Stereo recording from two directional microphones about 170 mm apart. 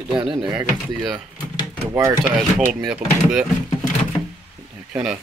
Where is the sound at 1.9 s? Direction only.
15° right (ahead or behind).